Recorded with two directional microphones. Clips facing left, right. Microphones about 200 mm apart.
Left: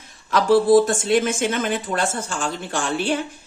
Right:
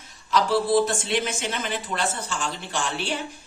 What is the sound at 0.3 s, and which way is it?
Speech, 50° left (ahead or behind).